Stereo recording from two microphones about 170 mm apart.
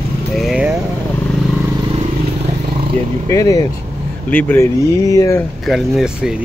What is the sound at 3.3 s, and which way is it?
Speech, 20° left (ahead or behind).